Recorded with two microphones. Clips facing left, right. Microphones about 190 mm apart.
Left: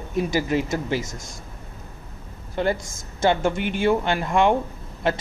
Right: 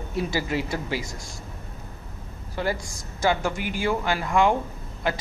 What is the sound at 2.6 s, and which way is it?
Speech, 20° left (ahead or behind).